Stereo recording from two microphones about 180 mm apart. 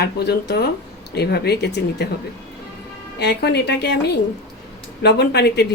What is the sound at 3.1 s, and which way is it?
Speech, 65° left (ahead or behind).